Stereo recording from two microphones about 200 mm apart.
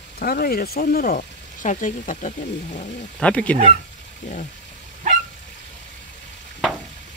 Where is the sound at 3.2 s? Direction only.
5° left (ahead or behind).